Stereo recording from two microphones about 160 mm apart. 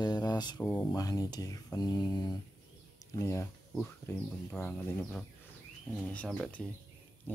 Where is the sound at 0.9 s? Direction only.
25° left (ahead or behind).